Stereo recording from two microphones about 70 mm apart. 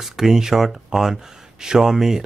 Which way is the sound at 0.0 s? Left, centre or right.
Centre.